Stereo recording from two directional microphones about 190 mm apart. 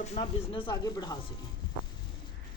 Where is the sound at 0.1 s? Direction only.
25° left (ahead or behind).